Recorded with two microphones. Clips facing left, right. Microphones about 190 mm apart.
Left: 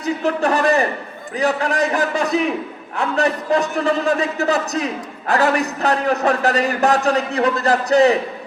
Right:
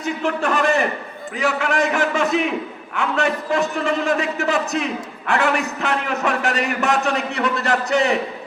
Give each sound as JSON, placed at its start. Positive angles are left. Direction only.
{"t": 0.0, "sound": "a man's voice", "side_deg": 35}